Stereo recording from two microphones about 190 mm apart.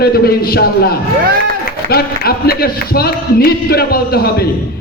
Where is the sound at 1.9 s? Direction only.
55° left (ahead or behind).